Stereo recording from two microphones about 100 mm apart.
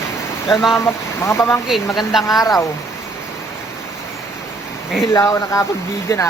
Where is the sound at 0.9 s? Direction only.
25° left (ahead or behind).